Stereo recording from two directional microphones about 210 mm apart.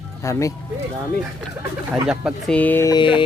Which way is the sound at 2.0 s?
5° right (ahead or behind).